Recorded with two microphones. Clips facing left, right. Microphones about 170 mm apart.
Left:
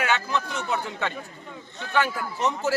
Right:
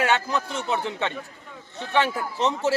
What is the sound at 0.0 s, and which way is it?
A man's voice, 35° right (ahead or behind).